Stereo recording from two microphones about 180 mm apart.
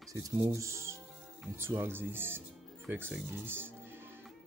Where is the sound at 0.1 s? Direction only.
15° right (ahead or behind).